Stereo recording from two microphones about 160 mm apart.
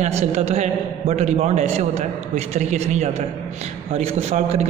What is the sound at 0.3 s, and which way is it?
A man's voice, 40° right (ahead or behind).